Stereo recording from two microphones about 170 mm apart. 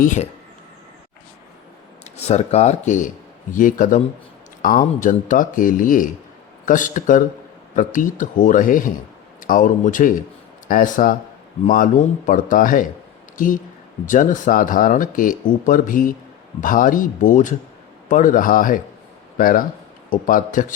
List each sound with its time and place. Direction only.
0.0 s speech: 45° left (ahead or behind)
2.1 s speech: 40° left (ahead or behind)